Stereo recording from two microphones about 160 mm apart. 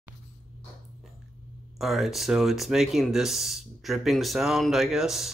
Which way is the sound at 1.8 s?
Centre (ahead or behind).